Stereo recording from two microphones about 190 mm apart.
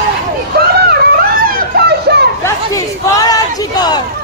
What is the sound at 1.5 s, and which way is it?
Children playing, 55° right (ahead or behind).